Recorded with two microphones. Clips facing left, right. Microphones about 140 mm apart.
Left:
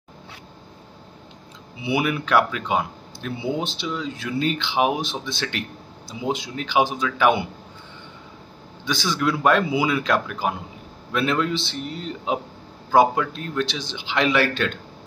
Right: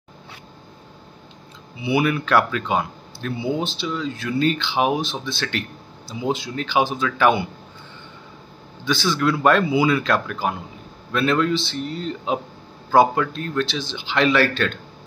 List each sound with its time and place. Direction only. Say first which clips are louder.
1.9 s speech: right 2 dB; 15° left (ahead or behind)
8.8 s speech: right 3 dB; 15° left (ahead or behind)